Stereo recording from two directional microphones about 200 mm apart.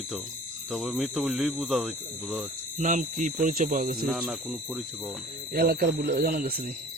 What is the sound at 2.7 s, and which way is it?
Speech, 40° right (ahead or behind).